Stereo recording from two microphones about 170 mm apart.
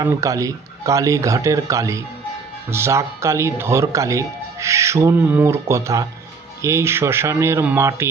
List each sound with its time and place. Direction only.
0.0 s speech: 20° right (ahead or behind)